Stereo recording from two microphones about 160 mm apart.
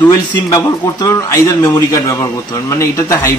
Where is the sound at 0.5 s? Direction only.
20° left (ahead or behind).